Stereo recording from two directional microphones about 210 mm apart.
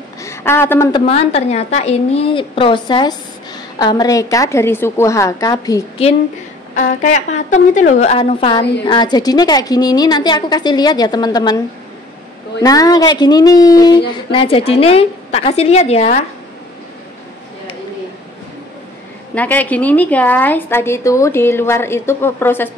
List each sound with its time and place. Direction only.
0.2 s a woman's voice: 10° left (ahead or behind)
1.0 s a woman's voice: 30° left (ahead or behind)
6.8 s a woman's voice: 35° left (ahead or behind)
19.3 s a woman's voice: 10° left (ahead or behind)